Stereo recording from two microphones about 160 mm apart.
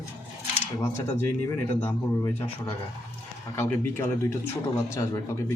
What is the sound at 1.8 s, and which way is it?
Speech, 15° left (ahead or behind).